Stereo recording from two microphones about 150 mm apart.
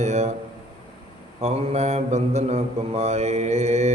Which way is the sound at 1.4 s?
45° right (ahead or behind).